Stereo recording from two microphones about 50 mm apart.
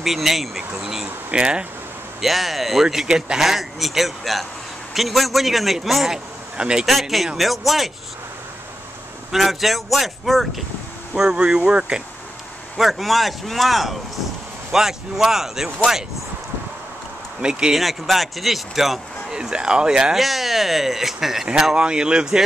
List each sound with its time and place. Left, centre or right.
0.0 s speech: centre
1.3 s speech: centre
2.2 s speech: centre
6.5 s speech: centre
6.9 s speech: centre
9.3 s speech: centre
11.1 s speech: right
12.7 s speech: centre
17.4 s speech: centre
17.7 s speech: centre
19.3 s speech: centre
20.2 s speech: centre